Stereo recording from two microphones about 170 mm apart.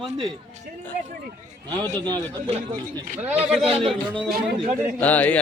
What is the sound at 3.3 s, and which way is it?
Speech, 35° right (ahead or behind).